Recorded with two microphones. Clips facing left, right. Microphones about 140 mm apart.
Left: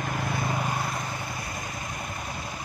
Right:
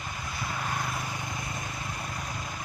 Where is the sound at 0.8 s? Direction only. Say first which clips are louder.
Left 2 dB; 15° left (ahead or behind).